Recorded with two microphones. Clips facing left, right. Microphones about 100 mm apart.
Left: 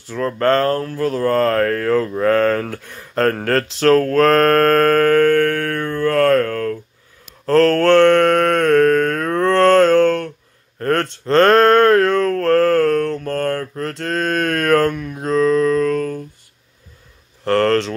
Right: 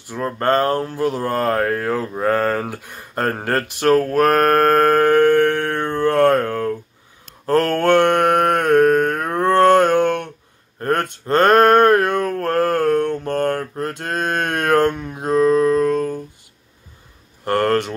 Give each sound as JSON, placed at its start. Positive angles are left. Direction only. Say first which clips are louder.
{"t": 0.0, "sound": "speech", "louder": "left 3 dB", "side_deg": -15}
{"t": 7.4, "sound": "mantra", "louder": "left 3 dB", "side_deg": -15}
{"t": 10.8, "sound": "a sound", "louder": "left 2 dB", "side_deg": -15}
{"t": 17.5, "sound": "speech", "louder": "left 2 dB", "side_deg": -15}